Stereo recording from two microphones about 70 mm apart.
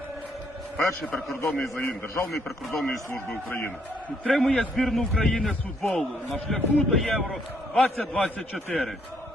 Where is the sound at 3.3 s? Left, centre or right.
Left.